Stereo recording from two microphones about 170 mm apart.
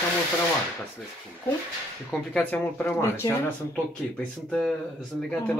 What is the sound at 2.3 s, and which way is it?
Speech, 10° left (ahead or behind).